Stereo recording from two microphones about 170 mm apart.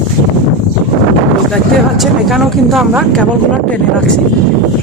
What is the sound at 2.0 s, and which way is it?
Speech, centre (ahead or behind).